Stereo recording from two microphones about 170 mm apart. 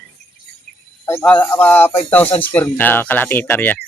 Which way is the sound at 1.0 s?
10° left (ahead or behind).